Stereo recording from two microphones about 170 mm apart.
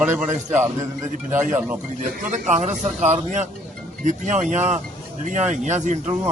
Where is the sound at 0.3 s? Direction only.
45° right (ahead or behind).